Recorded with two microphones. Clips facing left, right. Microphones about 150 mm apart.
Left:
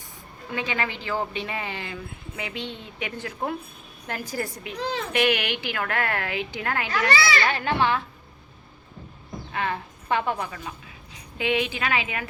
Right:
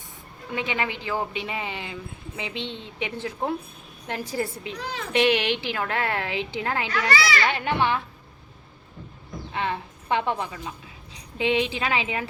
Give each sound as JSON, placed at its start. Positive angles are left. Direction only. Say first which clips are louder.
{"t": 0.5, "sound": "speech", "louder": "right 1 dB", "side_deg": -20}
{"t": 9.5, "sound": "a woman's voice", "louder": "even", "side_deg": -25}